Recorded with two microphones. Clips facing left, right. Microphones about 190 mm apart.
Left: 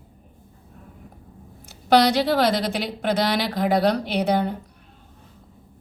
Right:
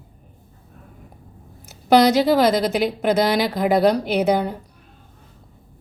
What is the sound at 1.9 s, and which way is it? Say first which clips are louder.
A woman's voice: right 3 dB; 5° right (ahead or behind).